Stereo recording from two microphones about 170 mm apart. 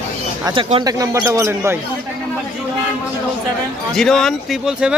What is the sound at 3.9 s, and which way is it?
Speech, centre (ahead or behind).